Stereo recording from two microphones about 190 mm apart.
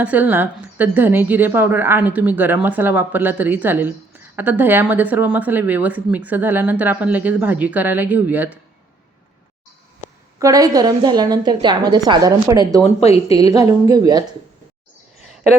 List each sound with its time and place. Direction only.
0.0 s a woman's voice: 10° right (ahead or behind)
10.4 s a woman's voice: 20° right (ahead or behind)